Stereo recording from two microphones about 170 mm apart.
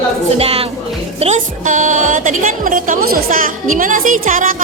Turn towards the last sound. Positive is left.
turn(degrees=-50)  # may be behind; listen again after turning